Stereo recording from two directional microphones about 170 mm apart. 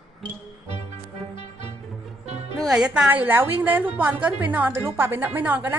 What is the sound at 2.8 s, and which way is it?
A woman's voice, 5° right (ahead or behind).